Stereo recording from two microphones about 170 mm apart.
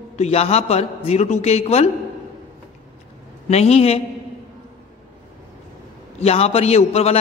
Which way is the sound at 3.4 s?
40° left (ahead or behind).